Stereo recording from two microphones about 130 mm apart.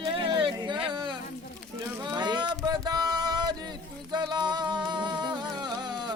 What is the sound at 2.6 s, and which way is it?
Music, 30° right (ahead or behind).